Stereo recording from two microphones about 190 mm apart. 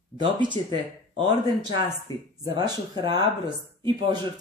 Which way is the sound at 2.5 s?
20° right (ahead or behind).